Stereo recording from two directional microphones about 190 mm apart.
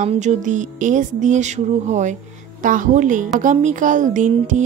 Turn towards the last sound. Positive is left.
turn(degrees=-40)  # may be behind; listen again after turning